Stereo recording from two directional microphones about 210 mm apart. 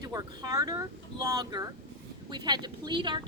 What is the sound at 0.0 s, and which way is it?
A woman's voice, 15° right (ahead or behind).